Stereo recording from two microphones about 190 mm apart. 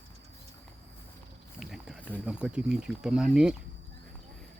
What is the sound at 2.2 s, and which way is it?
Speech, 5° right (ahead or behind).